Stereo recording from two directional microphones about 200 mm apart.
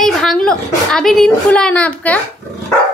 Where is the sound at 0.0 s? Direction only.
Centre (ahead or behind).